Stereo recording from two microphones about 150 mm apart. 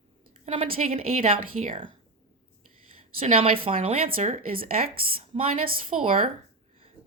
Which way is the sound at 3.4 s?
40° right (ahead or behind).